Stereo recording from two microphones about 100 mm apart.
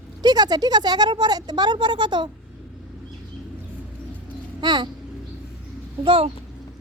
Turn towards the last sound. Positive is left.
turn(degrees=-65)  # may be behind; listen again after turning